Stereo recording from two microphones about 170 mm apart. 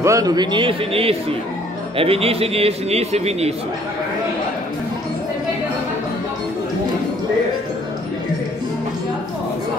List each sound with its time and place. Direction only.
0.0 s a man's voice: 20° right (ahead or behind); by 3.5 s 40° right (ahead or behind)